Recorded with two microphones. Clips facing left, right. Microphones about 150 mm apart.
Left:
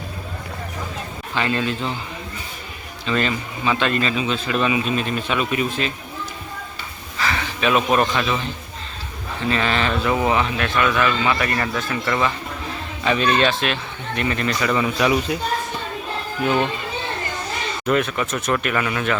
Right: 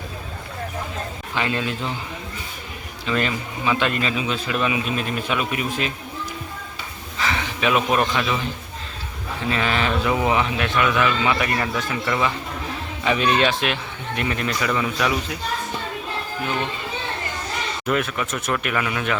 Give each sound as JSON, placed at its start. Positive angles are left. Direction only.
{"t": 1.4, "sound": "a man's voice", "side_deg": -10}
{"t": 3.1, "sound": "a man's voice", "side_deg": -10}
{"t": 7.2, "sound": "a sound", "side_deg": -15}
{"t": 7.9, "sound": "speech", "side_deg": -5}
{"t": 9.5, "sound": "a man's voice", "side_deg": -10}
{"t": 17.8, "sound": "speech", "side_deg": -5}